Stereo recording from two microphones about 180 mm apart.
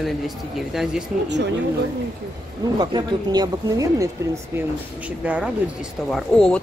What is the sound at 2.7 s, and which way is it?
Speech, 20° right (ahead or behind).